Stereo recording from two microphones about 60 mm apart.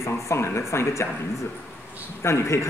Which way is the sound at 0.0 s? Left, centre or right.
Left.